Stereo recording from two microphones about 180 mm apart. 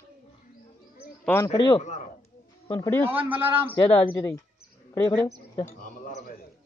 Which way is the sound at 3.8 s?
30° left (ahead or behind).